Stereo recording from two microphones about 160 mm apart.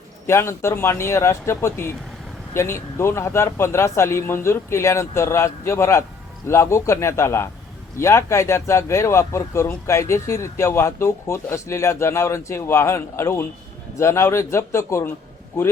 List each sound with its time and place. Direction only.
0.3 s speech: 15° left (ahead or behind)